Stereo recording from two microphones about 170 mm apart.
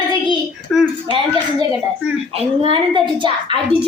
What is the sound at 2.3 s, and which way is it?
A woman's voice, 35° right (ahead or behind).